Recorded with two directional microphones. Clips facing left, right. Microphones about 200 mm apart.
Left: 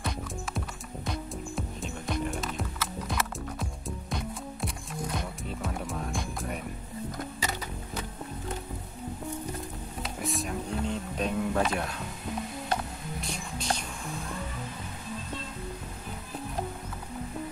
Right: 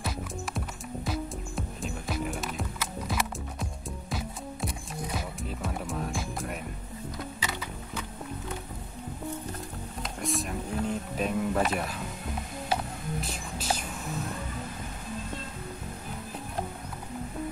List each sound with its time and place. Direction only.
0.6 s music: centre (ahead or behind)
7.4 s music: 45° left (ahead or behind)
10.0 s music: centre (ahead or behind)
13.2 s music: 5° right (ahead or behind)